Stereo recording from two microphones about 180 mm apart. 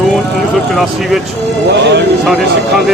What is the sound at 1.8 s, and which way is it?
Speech, 70° right (ahead or behind).